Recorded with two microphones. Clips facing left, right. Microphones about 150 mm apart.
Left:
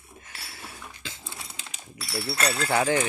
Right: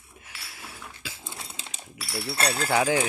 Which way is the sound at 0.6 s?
10° right (ahead or behind).